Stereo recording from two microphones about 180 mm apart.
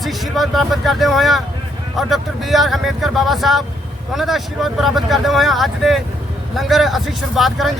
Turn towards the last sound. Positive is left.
turn(degrees=0)  # may be behind; listen again after turning